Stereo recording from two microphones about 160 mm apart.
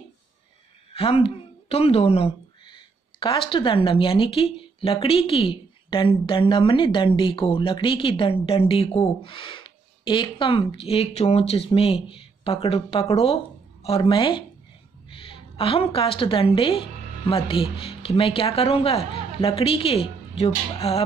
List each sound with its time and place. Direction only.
0.9 s a woman's voice: 35° left (ahead or behind)